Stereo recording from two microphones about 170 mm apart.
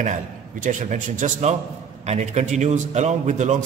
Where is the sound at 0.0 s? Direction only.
50° right (ahead or behind).